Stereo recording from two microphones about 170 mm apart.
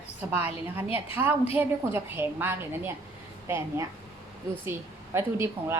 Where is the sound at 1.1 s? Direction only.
10° right (ahead or behind).